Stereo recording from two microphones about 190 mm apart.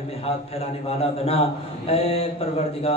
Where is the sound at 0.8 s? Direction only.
30° left (ahead or behind).